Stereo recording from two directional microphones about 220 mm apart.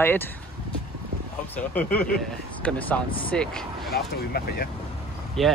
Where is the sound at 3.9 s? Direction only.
45° left (ahead or behind).